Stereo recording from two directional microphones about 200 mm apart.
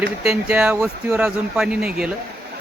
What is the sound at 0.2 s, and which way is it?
Speech, 5° right (ahead or behind).